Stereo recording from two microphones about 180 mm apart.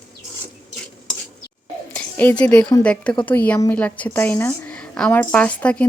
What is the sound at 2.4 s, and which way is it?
A woman's voice, 5° left (ahead or behind).